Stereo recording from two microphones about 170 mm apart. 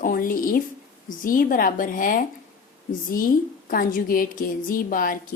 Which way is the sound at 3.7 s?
55° left (ahead or behind).